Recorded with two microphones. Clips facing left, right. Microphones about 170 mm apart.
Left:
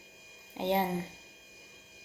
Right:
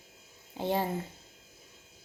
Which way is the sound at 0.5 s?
20° left (ahead or behind).